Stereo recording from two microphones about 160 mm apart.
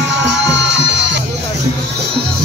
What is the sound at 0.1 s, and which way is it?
Music, 90° right.